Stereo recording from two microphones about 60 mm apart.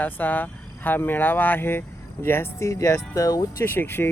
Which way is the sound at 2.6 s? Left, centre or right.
Left.